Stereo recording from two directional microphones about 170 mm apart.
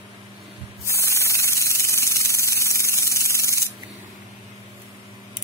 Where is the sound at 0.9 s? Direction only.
15° left (ahead or behind).